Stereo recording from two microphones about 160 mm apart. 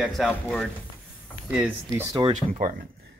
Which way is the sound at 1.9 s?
20° right (ahead or behind).